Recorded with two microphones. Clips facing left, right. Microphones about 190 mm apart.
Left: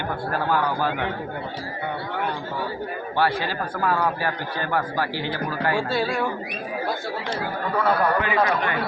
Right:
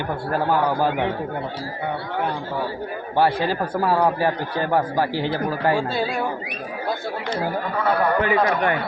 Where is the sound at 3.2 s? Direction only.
30° right (ahead or behind).